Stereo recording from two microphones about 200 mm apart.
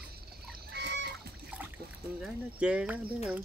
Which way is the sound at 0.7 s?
55° right (ahead or behind).